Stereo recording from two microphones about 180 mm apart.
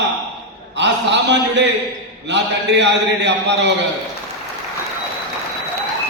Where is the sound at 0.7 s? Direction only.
75° right (ahead or behind).